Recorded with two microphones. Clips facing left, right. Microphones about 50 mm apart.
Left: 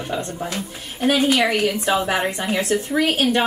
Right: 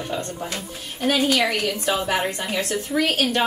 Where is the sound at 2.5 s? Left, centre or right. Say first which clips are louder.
Left 5 dB; centre.